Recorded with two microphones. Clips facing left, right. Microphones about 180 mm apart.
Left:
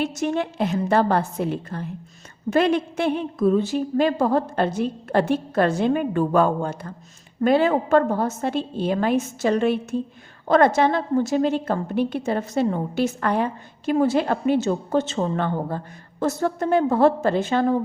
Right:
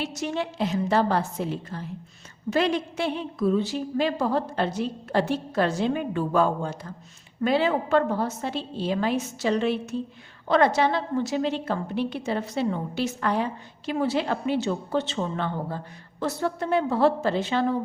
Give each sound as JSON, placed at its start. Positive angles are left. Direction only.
{"t": 0.0, "sound": "a woman's voice", "side_deg": 50}